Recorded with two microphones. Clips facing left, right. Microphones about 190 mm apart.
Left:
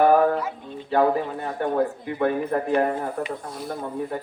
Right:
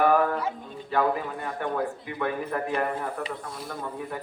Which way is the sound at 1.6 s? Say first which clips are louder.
Left 6 dB; 40° left (ahead or behind).